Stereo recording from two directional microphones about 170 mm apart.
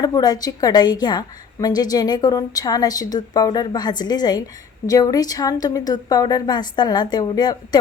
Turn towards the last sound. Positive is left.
turn(degrees=25)  # may be behind; listen again after turning